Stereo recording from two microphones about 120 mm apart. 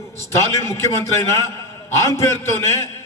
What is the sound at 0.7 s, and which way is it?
A man's voice, 25° left (ahead or behind).